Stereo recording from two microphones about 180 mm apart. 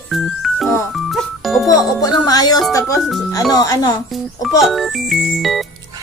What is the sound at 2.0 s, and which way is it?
Music, 20° left (ahead or behind).